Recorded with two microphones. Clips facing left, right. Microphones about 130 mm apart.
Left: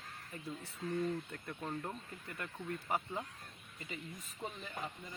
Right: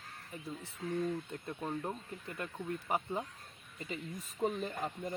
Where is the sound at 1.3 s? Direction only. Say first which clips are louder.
Right 3 dB; 20° right (ahead or behind).